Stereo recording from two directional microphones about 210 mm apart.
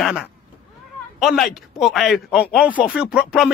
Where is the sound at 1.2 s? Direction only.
Centre (ahead or behind).